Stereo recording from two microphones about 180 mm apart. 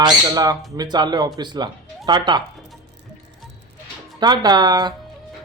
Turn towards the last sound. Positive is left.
turn(degrees=-25)  # may be behind; listen again after turning